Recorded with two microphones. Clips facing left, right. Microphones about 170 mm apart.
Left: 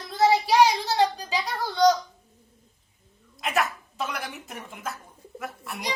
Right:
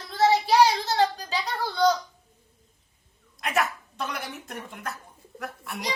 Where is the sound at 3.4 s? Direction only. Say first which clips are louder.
Even; centre (ahead or behind).